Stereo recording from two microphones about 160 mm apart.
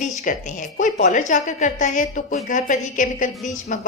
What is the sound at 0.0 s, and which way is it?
A woman's voice, 50° left (ahead or behind).